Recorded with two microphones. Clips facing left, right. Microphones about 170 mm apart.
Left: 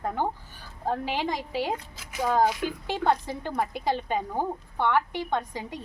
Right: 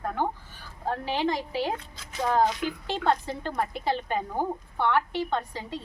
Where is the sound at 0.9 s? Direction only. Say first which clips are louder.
Right 1 dB; 15° left (ahead or behind).